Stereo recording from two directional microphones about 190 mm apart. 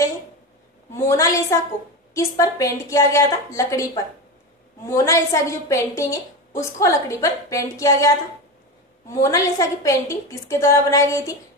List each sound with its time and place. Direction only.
0.9 s a woman's voice: 15° left (ahead or behind)
9.2 s a woman's voice: 15° left (ahead or behind)